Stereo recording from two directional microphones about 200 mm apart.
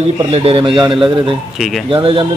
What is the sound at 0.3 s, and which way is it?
Speech, 25° right (ahead or behind).